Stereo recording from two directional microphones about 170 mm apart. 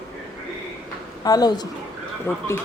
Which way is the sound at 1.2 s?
20° left (ahead or behind).